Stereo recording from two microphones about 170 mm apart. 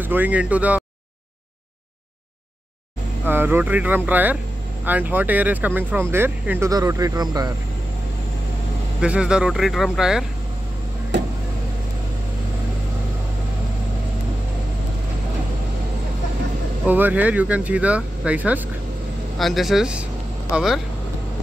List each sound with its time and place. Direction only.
0.0 s speech: 10° right (ahead or behind)
3.3 s speech: 10° right (ahead or behind)
9.0 s speech: 5° right (ahead or behind)
16.8 s speech: 10° right (ahead or behind)